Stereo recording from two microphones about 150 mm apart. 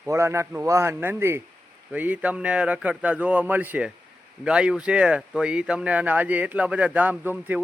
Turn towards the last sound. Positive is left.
turn(degrees=-10)  # may be behind; listen again after turning